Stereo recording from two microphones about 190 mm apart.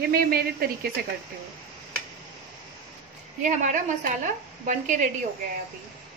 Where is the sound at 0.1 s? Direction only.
55° right (ahead or behind).